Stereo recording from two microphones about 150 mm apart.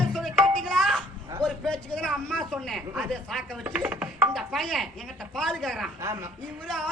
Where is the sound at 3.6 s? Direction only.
10° right (ahead or behind).